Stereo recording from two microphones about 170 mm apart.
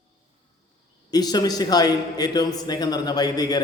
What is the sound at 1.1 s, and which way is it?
A man's voice, 25° left (ahead or behind).